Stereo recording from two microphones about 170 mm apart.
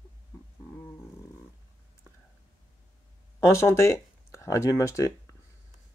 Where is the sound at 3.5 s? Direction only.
15° left (ahead or behind).